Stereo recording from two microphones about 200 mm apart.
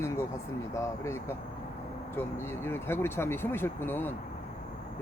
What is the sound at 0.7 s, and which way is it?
Speech, 15° left (ahead or behind).